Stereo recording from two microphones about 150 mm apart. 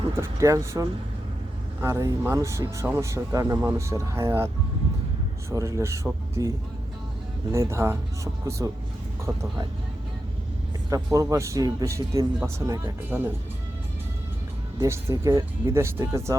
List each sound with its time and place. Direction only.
0.2 s speech: 20° right (ahead or behind)
7.5 s speech: 20° right (ahead or behind)
10.8 s speech: 25° right (ahead or behind)
14.8 s speech: 20° right (ahead or behind)